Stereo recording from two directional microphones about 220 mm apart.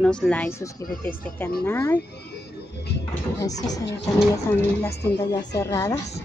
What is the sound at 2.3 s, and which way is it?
Music, 50° left (ahead or behind).